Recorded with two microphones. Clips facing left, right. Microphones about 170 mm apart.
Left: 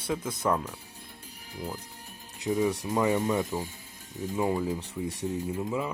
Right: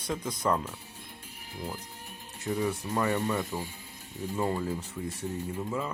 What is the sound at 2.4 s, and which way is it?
Speech, 15° left (ahead or behind).